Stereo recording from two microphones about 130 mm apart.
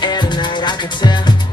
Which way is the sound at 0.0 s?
35° left (ahead or behind).